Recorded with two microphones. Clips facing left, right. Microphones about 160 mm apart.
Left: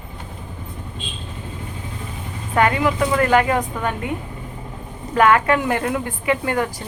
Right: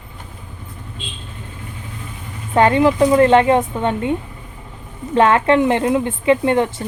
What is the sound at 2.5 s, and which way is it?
A woman's voice, 30° right (ahead or behind).